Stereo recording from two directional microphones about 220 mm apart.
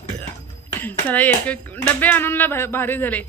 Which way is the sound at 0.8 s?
5° left (ahead or behind).